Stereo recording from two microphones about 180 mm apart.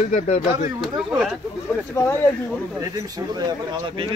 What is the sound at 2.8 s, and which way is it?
Speech, 20° right (ahead or behind).